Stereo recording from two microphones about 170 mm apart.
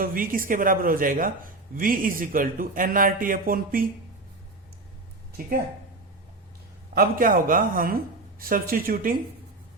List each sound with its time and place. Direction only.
0.0 s speech: 55° right (ahead or behind)
5.4 s speech: 60° right (ahead or behind)
6.9 s speech: 55° right (ahead or behind)